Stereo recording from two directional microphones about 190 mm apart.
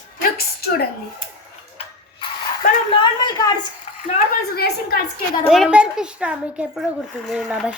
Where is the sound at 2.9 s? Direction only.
25° left (ahead or behind).